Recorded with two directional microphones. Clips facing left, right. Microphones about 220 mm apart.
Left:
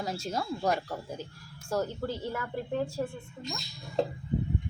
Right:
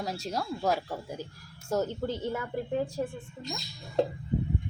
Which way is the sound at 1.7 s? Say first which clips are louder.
Right 2 dB; 20° right (ahead or behind).